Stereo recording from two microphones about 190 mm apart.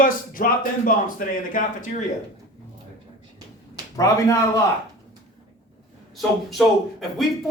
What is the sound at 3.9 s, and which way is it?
Speech, 15° left (ahead or behind).